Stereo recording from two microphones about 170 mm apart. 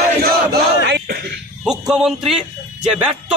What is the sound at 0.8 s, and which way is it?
Throat clearing, 75° right (ahead or behind).